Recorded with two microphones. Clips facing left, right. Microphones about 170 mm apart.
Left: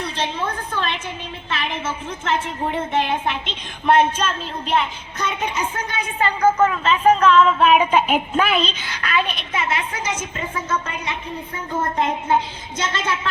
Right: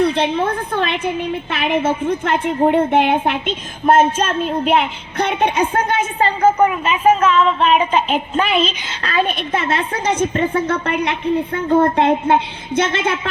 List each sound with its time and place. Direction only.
0.0 s a woman's voice: 60° right (ahead or behind)
6.1 s a woman's voice: 30° right (ahead or behind)
6.6 s a woman's voice: 15° right (ahead or behind)
9.0 s a woman's voice: 40° right (ahead or behind)
9.5 s a woman's voice: 55° right (ahead or behind)